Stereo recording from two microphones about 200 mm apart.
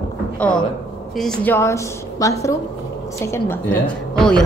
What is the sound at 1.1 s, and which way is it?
A woman's voice, 5° left (ahead or behind).